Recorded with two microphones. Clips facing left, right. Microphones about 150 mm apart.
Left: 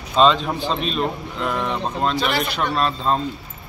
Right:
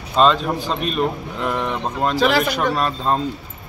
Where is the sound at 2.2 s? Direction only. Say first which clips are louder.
Right 5 dB; 90° right.